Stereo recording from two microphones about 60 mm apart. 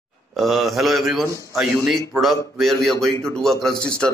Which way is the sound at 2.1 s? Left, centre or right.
Centre.